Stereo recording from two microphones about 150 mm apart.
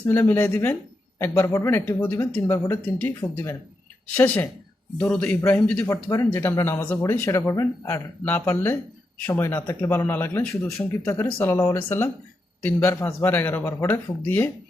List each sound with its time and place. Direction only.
0.0 s speech: 15° left (ahead or behind)